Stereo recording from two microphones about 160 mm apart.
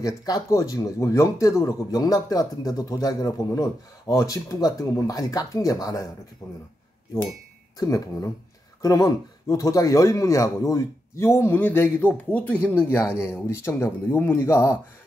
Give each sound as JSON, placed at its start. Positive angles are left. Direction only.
{"t": 0.0, "sound": "speech", "side_deg": 25}
{"t": 7.7, "sound": "speech", "side_deg": 20}